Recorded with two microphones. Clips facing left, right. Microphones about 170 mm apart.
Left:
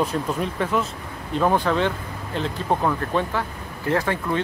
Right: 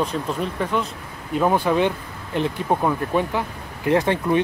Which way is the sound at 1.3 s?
10° right (ahead or behind).